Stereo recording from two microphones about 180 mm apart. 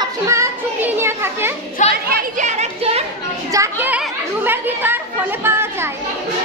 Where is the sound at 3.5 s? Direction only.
10° right (ahead or behind).